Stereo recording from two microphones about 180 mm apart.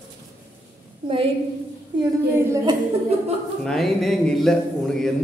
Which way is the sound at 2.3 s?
20° right (ahead or behind).